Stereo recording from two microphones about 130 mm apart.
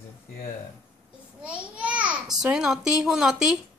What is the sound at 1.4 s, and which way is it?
Babbling, 10° right (ahead or behind).